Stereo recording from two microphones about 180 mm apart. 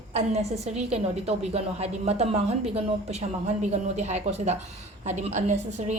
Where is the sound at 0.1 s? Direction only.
40° right (ahead or behind).